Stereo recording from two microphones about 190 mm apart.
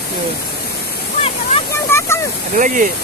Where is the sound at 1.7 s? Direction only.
15° left (ahead or behind).